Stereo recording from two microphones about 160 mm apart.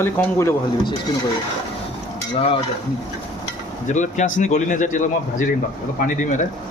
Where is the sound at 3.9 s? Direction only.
50° left (ahead or behind).